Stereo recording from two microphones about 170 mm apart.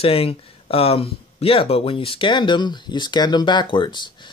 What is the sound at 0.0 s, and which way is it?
Speech, 35° left (ahead or behind).